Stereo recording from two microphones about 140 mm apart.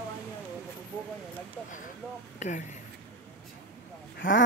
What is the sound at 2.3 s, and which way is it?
Speech, 60° left (ahead or behind).